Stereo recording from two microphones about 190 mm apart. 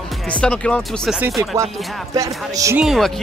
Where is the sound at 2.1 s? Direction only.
15° right (ahead or behind).